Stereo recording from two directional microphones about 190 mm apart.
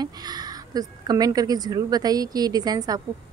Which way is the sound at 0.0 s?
20° right (ahead or behind).